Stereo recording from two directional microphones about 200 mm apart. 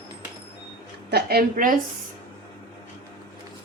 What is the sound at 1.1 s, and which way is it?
Speech, 50° right (ahead or behind).